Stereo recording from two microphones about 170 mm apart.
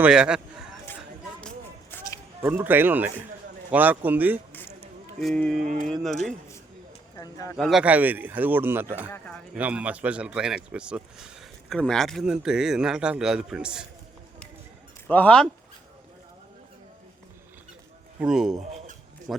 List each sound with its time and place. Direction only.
0.0 s speech: 5° right (ahead or behind)
1.4 s a sound: 5° left (ahead or behind)
2.4 s speech: 15° right (ahead or behind)
5.2 s speech: 5° left (ahead or behind)
5.6 s a sound: 50° right (ahead or behind)
5.9 s speech: centre (ahead or behind)
7.2 s speech: 20° left (ahead or behind)
7.5 s speech: centre (ahead or behind)
9.0 s speech: 10° left (ahead or behind)
9.6 s speech: 10° right (ahead or behind)
15.0 s speech: 10° left (ahead or behind)
18.2 s speech: 5° right (ahead or behind)